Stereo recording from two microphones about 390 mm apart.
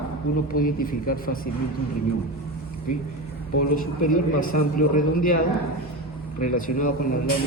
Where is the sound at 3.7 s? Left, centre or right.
Left.